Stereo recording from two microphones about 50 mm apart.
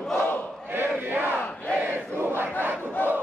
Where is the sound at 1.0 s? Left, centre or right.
Right.